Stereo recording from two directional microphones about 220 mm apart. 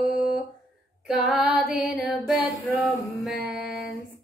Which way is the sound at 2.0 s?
5° right (ahead or behind).